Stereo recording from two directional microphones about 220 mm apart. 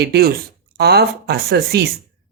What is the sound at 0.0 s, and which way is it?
Speech, 45° right (ahead or behind).